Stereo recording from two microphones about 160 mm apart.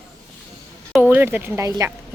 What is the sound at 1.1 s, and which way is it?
Speech, 10° right (ahead or behind).